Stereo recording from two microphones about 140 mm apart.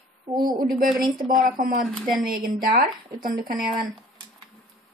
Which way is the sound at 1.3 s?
85° right.